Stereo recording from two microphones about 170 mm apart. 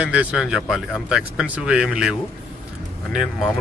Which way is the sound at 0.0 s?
5° right (ahead or behind).